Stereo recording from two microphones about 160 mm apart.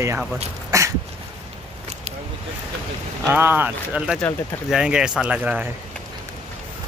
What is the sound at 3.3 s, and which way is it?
Speech, 10° right (ahead or behind).